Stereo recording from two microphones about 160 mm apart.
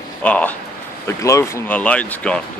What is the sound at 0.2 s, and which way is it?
Speech, 10° left (ahead or behind).